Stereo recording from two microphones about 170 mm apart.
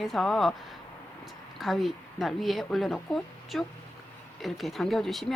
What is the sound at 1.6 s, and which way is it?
Speech, centre (ahead or behind).